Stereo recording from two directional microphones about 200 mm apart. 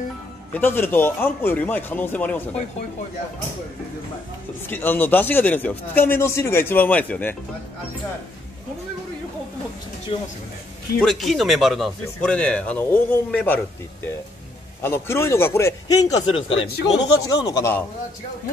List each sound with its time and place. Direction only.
0.5 s a man's voice: 10° left (ahead or behind)
4.6 s a man's voice: 10° left (ahead or behind)
10.1 s speech: 25° left (ahead or behind)
11.0 s speech: centre (ahead or behind)
14.8 s a man's voice: 10° left (ahead or behind)